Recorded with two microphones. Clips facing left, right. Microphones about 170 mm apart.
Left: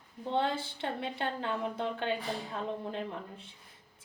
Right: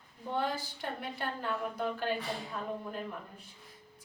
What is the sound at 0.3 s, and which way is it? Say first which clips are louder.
A woman's voice: left 3 dB; 25° left (ahead or behind).